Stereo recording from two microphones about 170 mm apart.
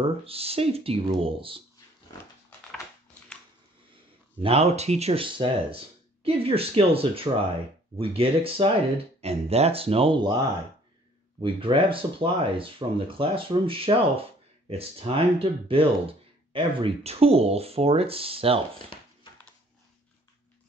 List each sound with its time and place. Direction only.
0.2 s speech: 35° right (ahead or behind)
4.4 s speech: 35° right (ahead or behind)
11.4 s speech: 30° right (ahead or behind)